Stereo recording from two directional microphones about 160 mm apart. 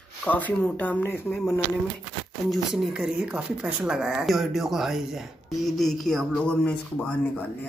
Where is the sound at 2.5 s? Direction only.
Centre (ahead or behind).